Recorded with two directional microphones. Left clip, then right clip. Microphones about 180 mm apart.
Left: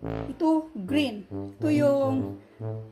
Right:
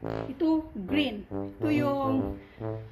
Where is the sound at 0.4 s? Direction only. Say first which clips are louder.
Left 3 dB; 55° left (ahead or behind).